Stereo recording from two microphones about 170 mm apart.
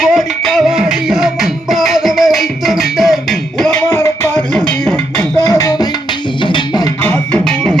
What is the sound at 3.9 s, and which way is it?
Music, 15° left (ahead or behind).